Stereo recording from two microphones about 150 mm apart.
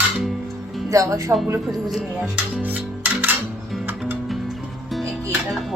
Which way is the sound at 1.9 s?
5° right (ahead or behind).